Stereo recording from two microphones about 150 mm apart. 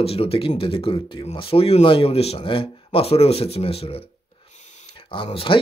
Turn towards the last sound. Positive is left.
turn(degrees=35)  # may be behind; listen again after turning